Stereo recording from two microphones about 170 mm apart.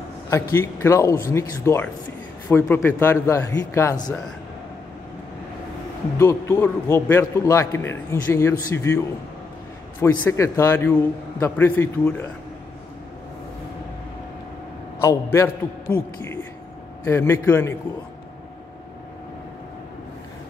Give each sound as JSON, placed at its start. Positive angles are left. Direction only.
{"t": 0.3, "sound": "a man's voice", "side_deg": 15}
{"t": 6.1, "sound": "a man's voice", "side_deg": 15}
{"t": 15.3, "sound": "a man's voice", "side_deg": 15}